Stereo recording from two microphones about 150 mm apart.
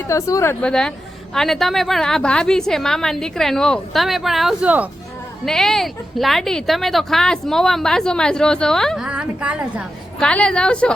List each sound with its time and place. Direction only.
0.1 s speech: 20° left (ahead or behind)
0.6 s a woman's voice: 5° left (ahead or behind)
5.5 s a woman's voice: centre (ahead or behind)
9.0 s a woman's voice: 10° right (ahead or behind)
10.2 s a woman's voice: 5° left (ahead or behind)